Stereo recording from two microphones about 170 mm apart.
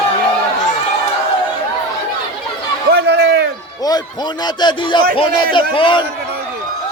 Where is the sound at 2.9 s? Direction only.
75° right (ahead or behind).